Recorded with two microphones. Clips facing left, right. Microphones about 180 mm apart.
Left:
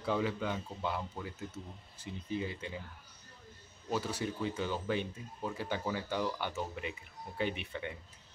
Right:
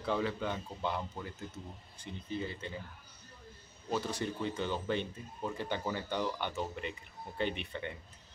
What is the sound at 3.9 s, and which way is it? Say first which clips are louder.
Speech: even; 10° left (ahead or behind).